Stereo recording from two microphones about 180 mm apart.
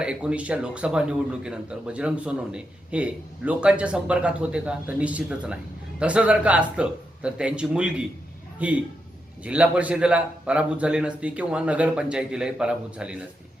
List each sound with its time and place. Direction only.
0.0 s a man's voice: 5° right (ahead or behind)